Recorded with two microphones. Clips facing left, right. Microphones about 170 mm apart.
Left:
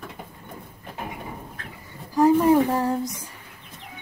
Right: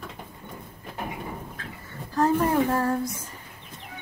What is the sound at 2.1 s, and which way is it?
Child singing, 15° left (ahead or behind).